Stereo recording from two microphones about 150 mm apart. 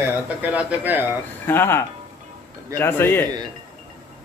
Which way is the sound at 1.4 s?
15° left (ahead or behind).